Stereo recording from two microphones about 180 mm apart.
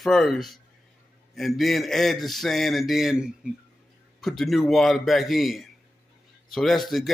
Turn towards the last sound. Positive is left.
turn(degrees=0)  # may be behind; listen again after turning